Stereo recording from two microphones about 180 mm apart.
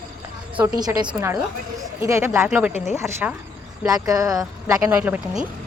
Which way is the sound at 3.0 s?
15° right (ahead or behind).